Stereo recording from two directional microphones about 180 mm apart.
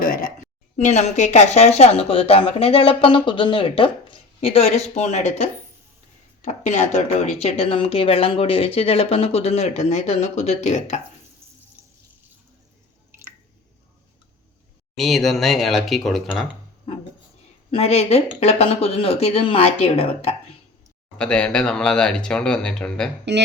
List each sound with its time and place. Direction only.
0.0 s a sound: 50° left (ahead or behind)
0.8 s a woman's voice: 40° left (ahead or behind)
13.1 s drip: 15° right (ahead or behind)
14.9 s speech: centre (ahead or behind)
17.7 s a woman's voice: 35° left (ahead or behind)
21.2 s speech: 5° left (ahead or behind)